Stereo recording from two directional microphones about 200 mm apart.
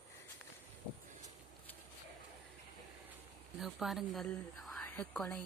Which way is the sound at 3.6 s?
Centre (ahead or behind).